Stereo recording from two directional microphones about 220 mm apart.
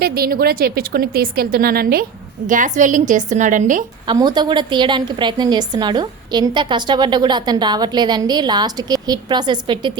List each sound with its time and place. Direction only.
0.0 s a woman's voice: 45° right (ahead or behind)
4.0 s a woman's voice: 20° right (ahead or behind)